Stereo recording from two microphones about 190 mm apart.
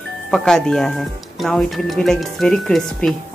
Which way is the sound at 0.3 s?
5° left (ahead or behind).